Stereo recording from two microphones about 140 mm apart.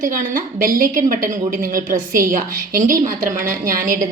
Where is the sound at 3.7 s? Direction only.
85° right.